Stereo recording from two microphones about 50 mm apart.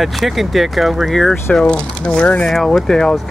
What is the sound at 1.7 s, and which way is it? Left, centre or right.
Speech, left.